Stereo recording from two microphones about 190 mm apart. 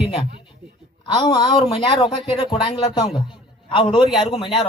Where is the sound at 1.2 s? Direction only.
20° left (ahead or behind).